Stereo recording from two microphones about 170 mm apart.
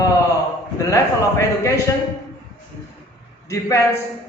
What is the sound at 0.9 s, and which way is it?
Speech, 20° left (ahead or behind).